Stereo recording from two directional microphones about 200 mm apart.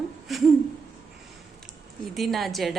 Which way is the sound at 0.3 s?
Centre (ahead or behind).